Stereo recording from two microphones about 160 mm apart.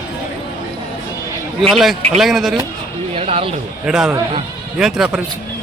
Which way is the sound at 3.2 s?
40° right (ahead or behind).